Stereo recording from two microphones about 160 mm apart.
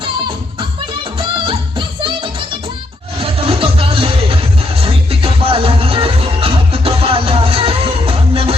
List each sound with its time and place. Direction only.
3.2 s music: 35° right (ahead or behind)